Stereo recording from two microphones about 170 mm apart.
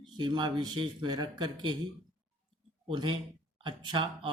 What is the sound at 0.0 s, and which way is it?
Speech, 25° right (ahead or behind).